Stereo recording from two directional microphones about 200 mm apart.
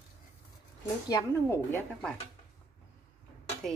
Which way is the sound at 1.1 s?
10° left (ahead or behind).